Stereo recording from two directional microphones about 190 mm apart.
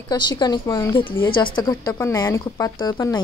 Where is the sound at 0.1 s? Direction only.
20° left (ahead or behind).